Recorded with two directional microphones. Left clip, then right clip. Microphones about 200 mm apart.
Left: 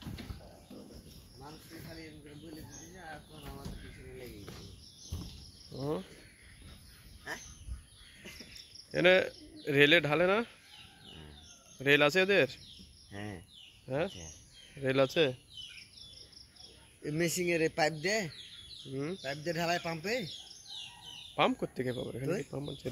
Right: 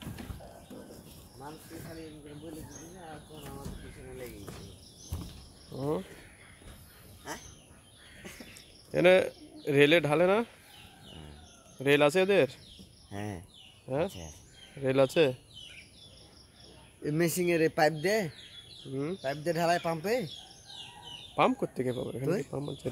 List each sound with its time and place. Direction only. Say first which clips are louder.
5.7 s speech: right 4 dB; centre (ahead or behind)
8.9 s speech: right 3 dB; 10° right (ahead or behind)
11.8 s speech: right 2 dB; 5° right (ahead or behind)
13.1 s speech: right 4 dB; 60° right (ahead or behind)
13.8 s speech: right 3 dB; centre (ahead or behind)
17.0 s speech: right 3 dB; 45° right (ahead or behind)
18.9 s speech: right 3 dB; centre (ahead or behind)
19.2 s speech: right 6 dB; 20° right (ahead or behind)
21.4 s speech: right 3 dB; 5° right (ahead or behind)